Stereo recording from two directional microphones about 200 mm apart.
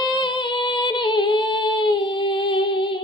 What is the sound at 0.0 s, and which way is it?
Music, 25° left (ahead or behind).